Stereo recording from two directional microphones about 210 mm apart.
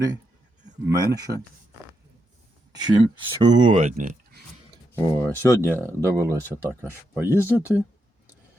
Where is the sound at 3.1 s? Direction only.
35° right (ahead or behind).